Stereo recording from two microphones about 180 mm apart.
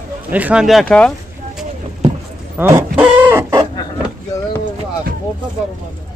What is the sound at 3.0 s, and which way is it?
Chicken, 10° right (ahead or behind).